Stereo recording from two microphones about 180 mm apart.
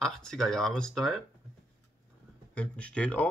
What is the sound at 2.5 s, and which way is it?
Speech, 5° left (ahead or behind).